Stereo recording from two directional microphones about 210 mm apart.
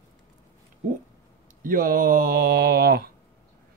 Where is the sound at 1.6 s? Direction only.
40° right (ahead or behind).